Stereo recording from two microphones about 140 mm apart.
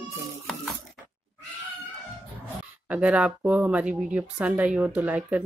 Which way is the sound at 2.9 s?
10° right (ahead or behind).